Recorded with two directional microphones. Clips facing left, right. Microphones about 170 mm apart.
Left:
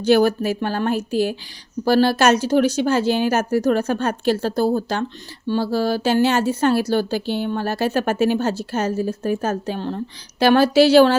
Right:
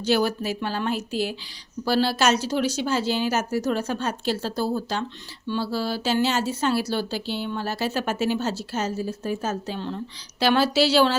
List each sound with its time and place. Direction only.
0.0 s a woman's voice: 55° left (ahead or behind)